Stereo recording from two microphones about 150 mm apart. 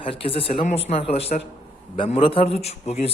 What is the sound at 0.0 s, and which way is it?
A man's voice, 40° left (ahead or behind).